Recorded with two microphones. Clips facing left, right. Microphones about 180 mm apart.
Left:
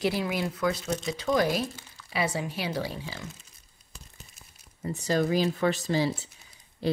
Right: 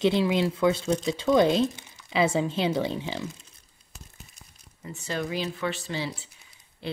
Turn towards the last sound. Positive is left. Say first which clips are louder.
# left 7 dB
turn(degrees=40)  # may be behind; listen again after turning